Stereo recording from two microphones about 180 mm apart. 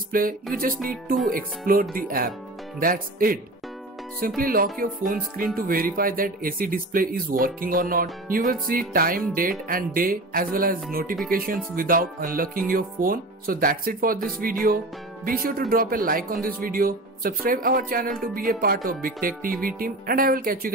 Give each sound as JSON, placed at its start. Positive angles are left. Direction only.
{"t": 0.1, "sound": "music", "side_deg": -50}
{"t": 1.7, "sound": "speech", "side_deg": -55}
{"t": 4.4, "sound": "speech", "side_deg": -55}